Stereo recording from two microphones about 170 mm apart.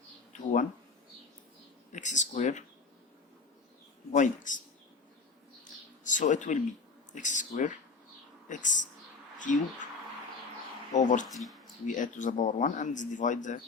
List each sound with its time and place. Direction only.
1.9 s a sound: 45° left (ahead or behind)
4.1 s speech: 50° left (ahead or behind)
6.1 s speech: 45° left (ahead or behind)
7.1 s a sound: 45° left (ahead or behind)
8.4 s speech: 50° left (ahead or behind)
10.9 s speech: 45° left (ahead or behind)
11.3 s speech: centre (ahead or behind)
11.9 s speech: 50° left (ahead or behind)